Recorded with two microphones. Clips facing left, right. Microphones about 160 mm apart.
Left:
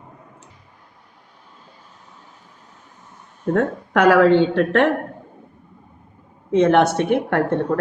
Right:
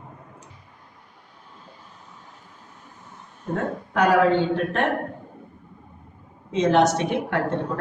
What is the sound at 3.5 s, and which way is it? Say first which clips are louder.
Speech: left 5 dB; 80° left.